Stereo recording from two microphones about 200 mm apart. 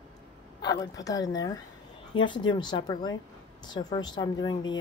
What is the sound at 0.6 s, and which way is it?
A woman's voice, 20° left (ahead or behind).